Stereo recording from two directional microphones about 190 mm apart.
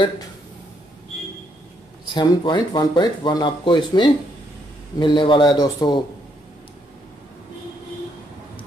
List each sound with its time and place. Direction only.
2.1 s speech: 25° left (ahead or behind)